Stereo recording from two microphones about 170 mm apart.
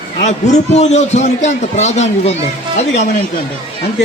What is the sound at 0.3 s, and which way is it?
A man's voice, 40° left (ahead or behind).